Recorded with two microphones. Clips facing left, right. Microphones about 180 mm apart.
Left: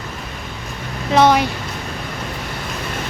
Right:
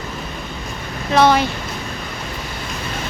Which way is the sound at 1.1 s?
15° left (ahead or behind).